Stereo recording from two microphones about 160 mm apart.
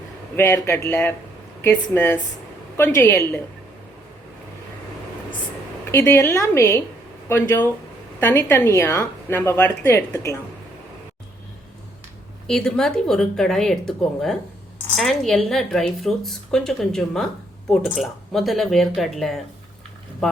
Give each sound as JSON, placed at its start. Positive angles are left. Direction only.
{"t": 0.3, "sound": "a woman's voice", "side_deg": 15}
{"t": 5.9, "sound": "a woman's voice", "side_deg": 15}
{"t": 12.5, "sound": "speech", "side_deg": 5}